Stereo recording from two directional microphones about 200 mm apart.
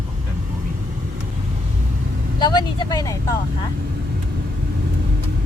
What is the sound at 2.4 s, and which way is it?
Vehicle, 20° left (ahead or behind).